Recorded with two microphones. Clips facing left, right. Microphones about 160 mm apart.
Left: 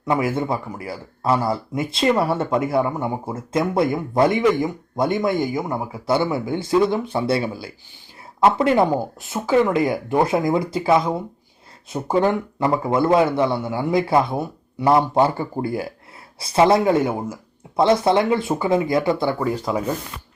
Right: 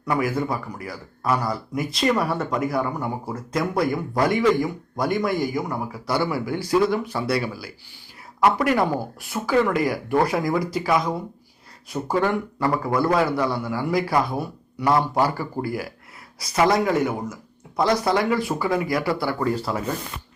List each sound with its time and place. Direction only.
0.0 s speech: 25° left (ahead or behind)
19.4 s speech: 10° left (ahead or behind)